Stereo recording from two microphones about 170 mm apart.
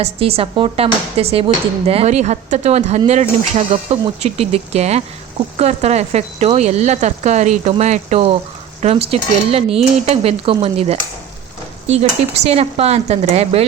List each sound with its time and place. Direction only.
0.0 s speech: 35° right (ahead or behind)